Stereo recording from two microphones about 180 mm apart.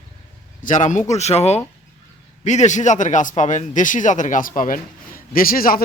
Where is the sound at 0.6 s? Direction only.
45° left (ahead or behind).